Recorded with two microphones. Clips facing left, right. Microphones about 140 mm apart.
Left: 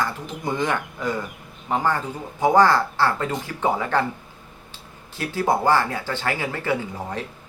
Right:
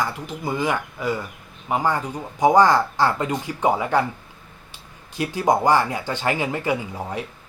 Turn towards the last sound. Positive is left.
turn(degrees=-15)  # may be behind; listen again after turning